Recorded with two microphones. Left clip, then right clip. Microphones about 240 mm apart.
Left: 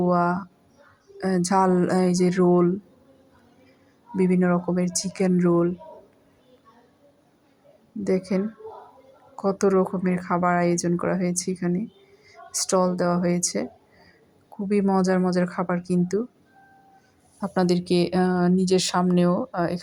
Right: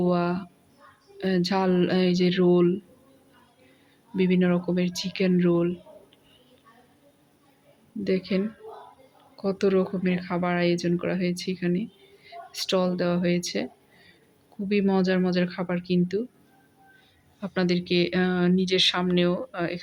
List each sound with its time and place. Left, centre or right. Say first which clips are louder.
0.0 s speech: left 4 dB; centre
4.1 s speech: left 2 dB; centre
8.0 s speech: left 2 dB; centre
14.7 s speech: left 2 dB; centre
17.7 s speech: right 1 dB; centre
19.3 s speech: left 4 dB; centre